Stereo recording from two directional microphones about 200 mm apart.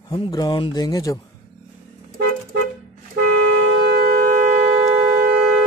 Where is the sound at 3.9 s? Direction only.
45° right (ahead or behind).